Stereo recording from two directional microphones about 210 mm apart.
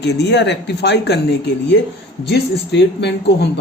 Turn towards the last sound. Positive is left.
turn(degrees=55)  # may be behind; listen again after turning